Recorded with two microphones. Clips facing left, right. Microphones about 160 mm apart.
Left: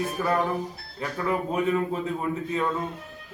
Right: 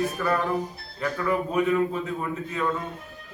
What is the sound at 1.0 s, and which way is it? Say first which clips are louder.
Speech: right 2 dB; 25° left (ahead or behind).